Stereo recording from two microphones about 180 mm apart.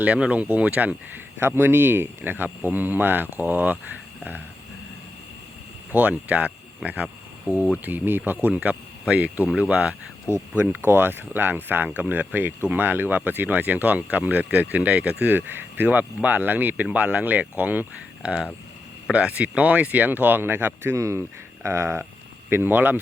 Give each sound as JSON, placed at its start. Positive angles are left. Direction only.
{"t": 0.0, "sound": "speech", "side_deg": -5}
{"t": 5.9, "sound": "speech", "side_deg": -10}